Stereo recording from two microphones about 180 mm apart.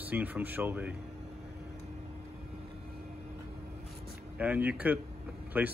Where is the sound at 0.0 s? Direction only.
10° right (ahead or behind).